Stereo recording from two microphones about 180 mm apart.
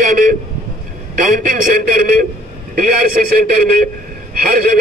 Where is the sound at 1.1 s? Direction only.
50° right (ahead or behind).